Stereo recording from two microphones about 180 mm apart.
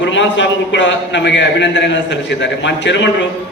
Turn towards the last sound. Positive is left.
turn(degrees=85)